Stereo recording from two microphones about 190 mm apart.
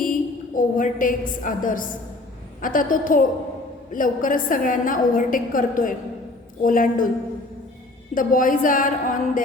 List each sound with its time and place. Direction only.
0.0 s a woman's voice: 45° left (ahead or behind)
8.1 s a woman's voice: 45° left (ahead or behind)